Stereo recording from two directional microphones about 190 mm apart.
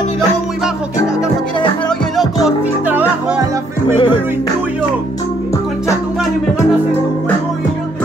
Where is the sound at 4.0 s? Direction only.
25° left (ahead or behind).